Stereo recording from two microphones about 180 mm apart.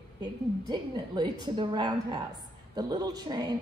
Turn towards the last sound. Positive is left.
turn(degrees=-20)  # may be behind; listen again after turning